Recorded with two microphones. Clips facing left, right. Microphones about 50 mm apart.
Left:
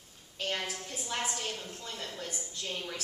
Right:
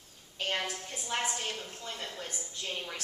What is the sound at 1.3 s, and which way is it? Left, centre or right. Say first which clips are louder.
A woman's voice: even; centre.